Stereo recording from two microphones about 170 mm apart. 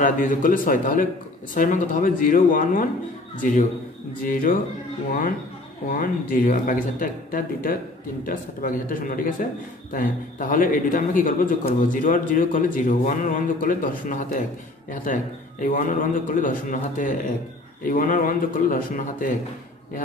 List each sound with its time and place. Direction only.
0.0 s a man's voice: 50° left (ahead or behind)
5.9 s a man's voice: 55° left (ahead or behind)